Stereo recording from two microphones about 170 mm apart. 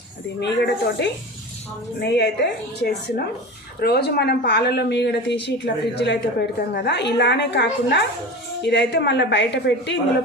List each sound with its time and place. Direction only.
0.3 s a woman's voice: 85° left